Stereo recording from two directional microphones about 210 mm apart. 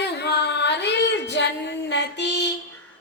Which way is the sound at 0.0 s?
55° left (ahead or behind).